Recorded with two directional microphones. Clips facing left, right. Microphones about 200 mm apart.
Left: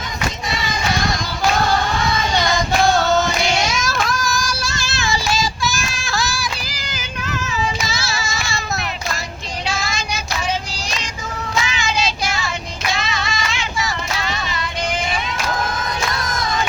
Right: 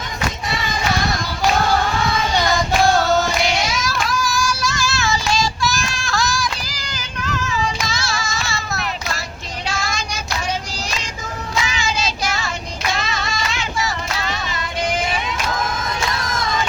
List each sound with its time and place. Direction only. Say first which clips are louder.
3.4 s child singing: left 1 dB; 45° left (ahead or behind); by 5.2 s 15° left (ahead or behind)
5.3 s child singing: right 1 dB; 5° left (ahead or behind)
11.6 s child singing: left 1 dB; 40° right (ahead or behind)